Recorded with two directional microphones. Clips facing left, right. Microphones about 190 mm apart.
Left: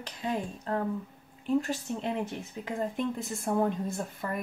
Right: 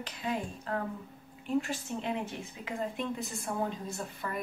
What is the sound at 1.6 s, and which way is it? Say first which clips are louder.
Speech: left 3 dB; 40° left (ahead or behind).